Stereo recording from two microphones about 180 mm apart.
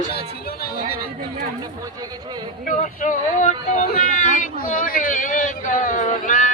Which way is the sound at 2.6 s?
45° left (ahead or behind).